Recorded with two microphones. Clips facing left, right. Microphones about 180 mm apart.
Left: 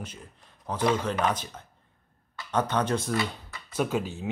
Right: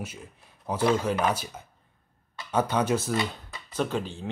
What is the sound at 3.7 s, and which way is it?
Speech, 10° left (ahead or behind).